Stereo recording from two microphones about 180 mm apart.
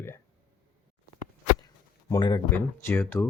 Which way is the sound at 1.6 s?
20° left (ahead or behind).